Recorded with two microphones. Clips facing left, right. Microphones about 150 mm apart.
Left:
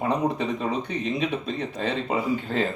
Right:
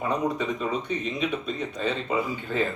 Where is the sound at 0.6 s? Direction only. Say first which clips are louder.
Left 1 dB; 35° left (ahead or behind).